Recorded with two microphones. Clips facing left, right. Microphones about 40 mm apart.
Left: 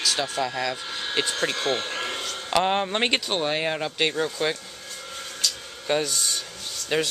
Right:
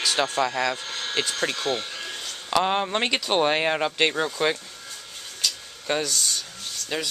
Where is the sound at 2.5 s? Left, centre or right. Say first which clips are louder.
Even; centre.